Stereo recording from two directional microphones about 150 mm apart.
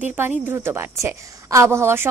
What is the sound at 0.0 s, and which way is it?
A woman's voice, 15° right (ahead or behind).